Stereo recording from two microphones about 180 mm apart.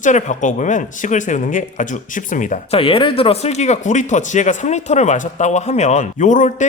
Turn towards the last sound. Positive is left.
turn(degrees=45)  # may be behind; listen again after turning